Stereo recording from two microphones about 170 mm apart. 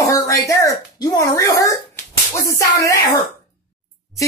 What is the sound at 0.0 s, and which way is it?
Speech, 20° left (ahead or behind).